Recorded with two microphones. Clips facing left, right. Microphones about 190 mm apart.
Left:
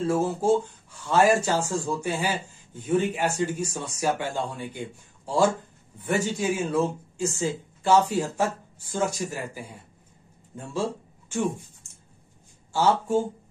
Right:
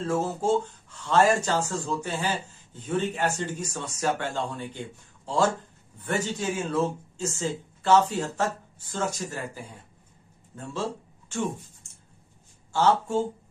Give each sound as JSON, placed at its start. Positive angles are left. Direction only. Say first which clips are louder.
{"t": 0.0, "sound": "speech", "louder": "left 3 dB", "side_deg": 10}
{"t": 12.7, "sound": "speech", "louder": "left 1 dB", "side_deg": 10}